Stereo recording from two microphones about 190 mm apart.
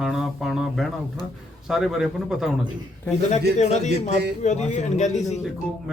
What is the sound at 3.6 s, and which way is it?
Speech, 40° left (ahead or behind).